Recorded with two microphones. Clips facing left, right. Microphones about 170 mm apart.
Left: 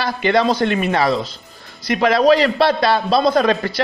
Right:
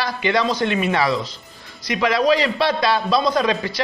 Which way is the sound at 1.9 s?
55° left (ahead or behind).